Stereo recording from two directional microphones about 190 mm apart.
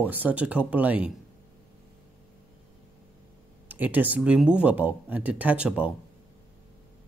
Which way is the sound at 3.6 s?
10° right (ahead or behind).